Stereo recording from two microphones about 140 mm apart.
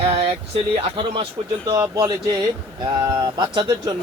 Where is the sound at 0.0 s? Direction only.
40° right (ahead or behind).